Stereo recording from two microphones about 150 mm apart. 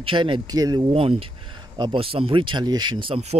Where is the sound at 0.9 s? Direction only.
40° right (ahead or behind).